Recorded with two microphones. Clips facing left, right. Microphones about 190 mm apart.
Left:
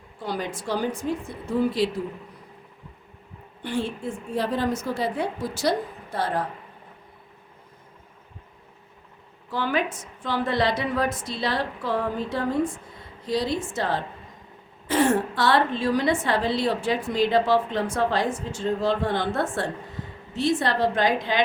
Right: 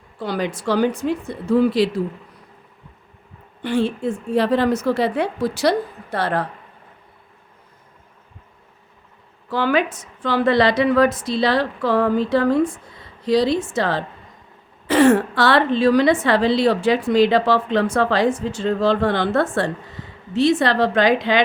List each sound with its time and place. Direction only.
0.2 s a woman's voice: 80° right
3.6 s a woman's voice: 90° right; by 6.5 s 75° right (ahead or behind)
9.5 s a woman's voice: 90° right